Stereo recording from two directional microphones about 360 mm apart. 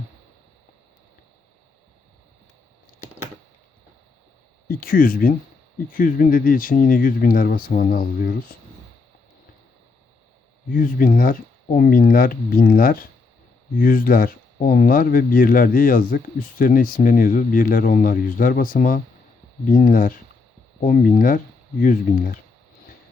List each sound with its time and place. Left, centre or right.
4.7 s speech: left
10.7 s speech: left